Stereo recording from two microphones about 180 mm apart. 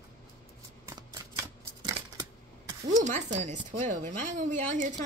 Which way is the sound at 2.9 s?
40° right (ahead or behind).